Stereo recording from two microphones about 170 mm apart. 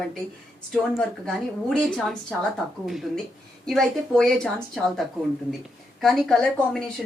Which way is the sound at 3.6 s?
Centre (ahead or behind).